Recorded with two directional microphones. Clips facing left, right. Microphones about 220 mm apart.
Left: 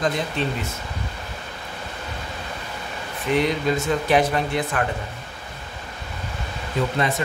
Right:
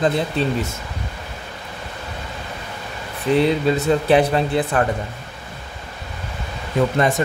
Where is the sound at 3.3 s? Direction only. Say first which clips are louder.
Right 4 dB; 30° right (ahead or behind).